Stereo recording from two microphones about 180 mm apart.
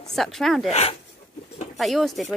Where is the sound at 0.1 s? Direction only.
Centre (ahead or behind).